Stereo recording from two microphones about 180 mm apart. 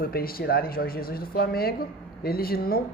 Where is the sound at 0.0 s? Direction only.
55° left (ahead or behind).